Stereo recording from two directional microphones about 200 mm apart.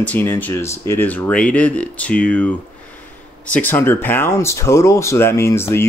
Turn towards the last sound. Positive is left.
turn(degrees=10)  # may be behind; listen again after turning